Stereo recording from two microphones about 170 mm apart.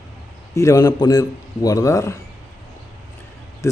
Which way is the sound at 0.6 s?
20° left (ahead or behind).